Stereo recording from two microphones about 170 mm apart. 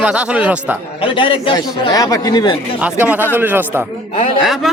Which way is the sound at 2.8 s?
10° right (ahead or behind).